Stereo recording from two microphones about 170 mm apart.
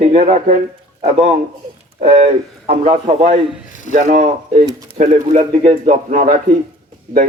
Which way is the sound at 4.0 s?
55° right (ahead or behind).